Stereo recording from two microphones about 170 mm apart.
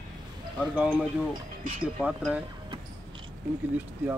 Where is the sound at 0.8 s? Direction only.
10° right (ahead or behind).